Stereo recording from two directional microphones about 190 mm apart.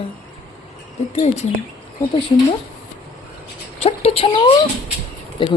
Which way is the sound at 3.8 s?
30° left (ahead or behind).